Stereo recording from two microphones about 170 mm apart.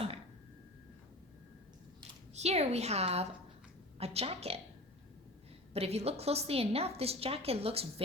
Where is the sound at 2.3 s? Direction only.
40° right (ahead or behind).